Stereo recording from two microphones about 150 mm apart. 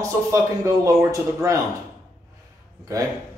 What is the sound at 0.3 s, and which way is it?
Speech, 20° right (ahead or behind).